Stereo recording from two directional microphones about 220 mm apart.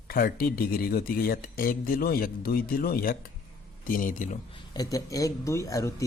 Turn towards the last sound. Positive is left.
turn(degrees=15)  # may be behind; listen again after turning